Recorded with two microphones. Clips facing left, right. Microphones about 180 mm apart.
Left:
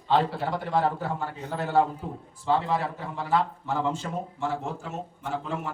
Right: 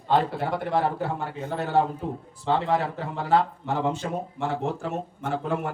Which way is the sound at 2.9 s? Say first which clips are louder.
Right 3 dB; 70° right (ahead or behind).